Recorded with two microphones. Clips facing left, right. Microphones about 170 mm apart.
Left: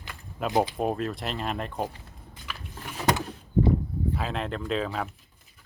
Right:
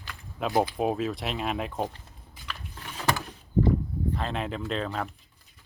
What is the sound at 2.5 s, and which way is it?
Vehicle, 5° left (ahead or behind).